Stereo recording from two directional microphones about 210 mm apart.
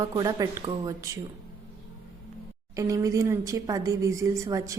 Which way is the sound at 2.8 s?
15° right (ahead or behind).